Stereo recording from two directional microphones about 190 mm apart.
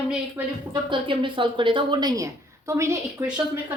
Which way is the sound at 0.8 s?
25° right (ahead or behind).